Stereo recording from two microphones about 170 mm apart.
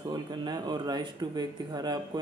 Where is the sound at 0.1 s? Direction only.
25° right (ahead or behind).